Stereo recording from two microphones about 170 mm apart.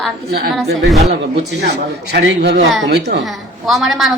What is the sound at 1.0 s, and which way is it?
Speech, 40° right (ahead or behind).